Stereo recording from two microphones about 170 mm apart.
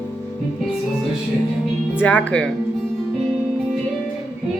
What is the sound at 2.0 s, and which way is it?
Speech, 10° left (ahead or behind).